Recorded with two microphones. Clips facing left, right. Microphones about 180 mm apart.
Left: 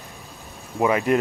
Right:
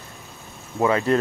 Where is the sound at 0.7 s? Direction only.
15° left (ahead or behind).